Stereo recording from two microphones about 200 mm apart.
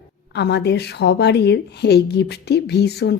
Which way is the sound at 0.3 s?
55° left (ahead or behind).